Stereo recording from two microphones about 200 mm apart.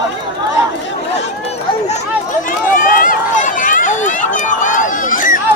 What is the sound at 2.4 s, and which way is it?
Run, 40° left (ahead or behind).